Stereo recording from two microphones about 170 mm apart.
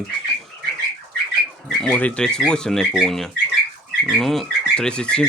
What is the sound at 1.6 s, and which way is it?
Speech, 10° left (ahead or behind).